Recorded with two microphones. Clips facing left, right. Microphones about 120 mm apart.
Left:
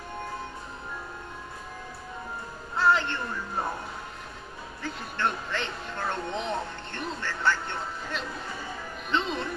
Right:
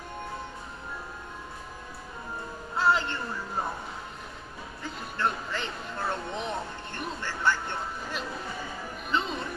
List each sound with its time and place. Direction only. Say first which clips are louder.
2.8 s speech: left 2 dB; 5° right (ahead or behind)
4.8 s speech: even; 5° right (ahead or behind)
9.1 s speech: left 2 dB; 5° right (ahead or behind)